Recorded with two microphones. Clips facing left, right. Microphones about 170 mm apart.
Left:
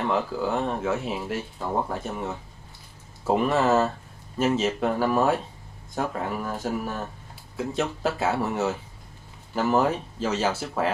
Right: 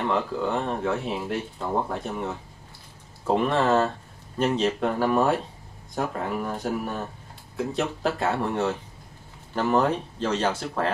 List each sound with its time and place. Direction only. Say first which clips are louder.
0.0 s speech: even; 5° left (ahead or behind)